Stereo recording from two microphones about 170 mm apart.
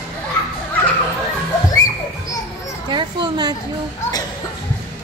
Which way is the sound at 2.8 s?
25° right (ahead or behind).